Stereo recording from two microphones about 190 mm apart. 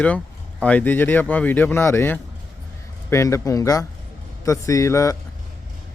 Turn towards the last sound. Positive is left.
turn(degrees=15)  # may be behind; listen again after turning